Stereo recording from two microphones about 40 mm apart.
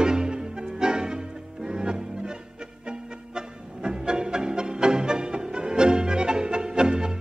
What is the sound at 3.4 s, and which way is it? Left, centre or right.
Music, right.